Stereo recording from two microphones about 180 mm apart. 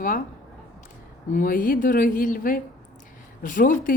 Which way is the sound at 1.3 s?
50° left (ahead or behind).